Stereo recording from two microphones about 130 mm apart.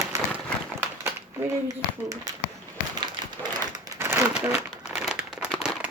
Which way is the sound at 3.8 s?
20° right (ahead or behind).